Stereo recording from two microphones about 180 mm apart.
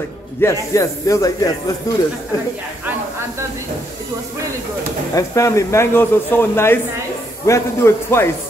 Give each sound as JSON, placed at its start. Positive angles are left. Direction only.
{"t": 0.4, "sound": "speech", "side_deg": 15}
{"t": 5.1, "sound": "speech", "side_deg": 15}